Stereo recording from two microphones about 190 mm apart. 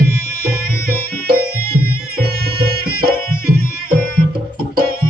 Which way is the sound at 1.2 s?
55° right (ahead or behind).